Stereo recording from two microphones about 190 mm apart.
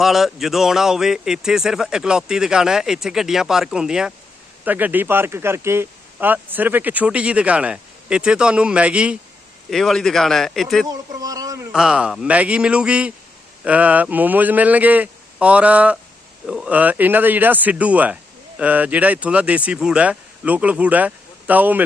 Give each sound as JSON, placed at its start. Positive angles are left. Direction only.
{"t": 0.0, "sound": "a man's voice", "side_deg": 0}
{"t": 10.8, "sound": "a sound", "side_deg": -20}
{"t": 11.7, "sound": "a man's voice", "side_deg": -5}